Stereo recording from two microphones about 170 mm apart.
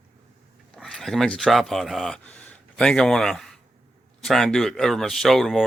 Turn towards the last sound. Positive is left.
turn(degrees=0)  # may be behind; listen again after turning